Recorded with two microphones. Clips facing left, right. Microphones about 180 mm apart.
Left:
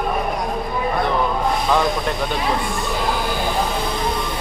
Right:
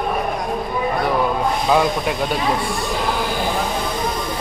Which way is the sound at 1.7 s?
10° right (ahead or behind).